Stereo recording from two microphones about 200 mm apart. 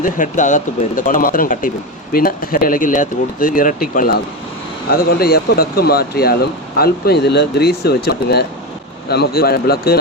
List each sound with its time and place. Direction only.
0.0 s speech: 40° left (ahead or behind)